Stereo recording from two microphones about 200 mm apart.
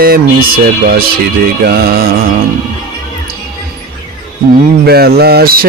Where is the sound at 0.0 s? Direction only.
50° right (ahead or behind).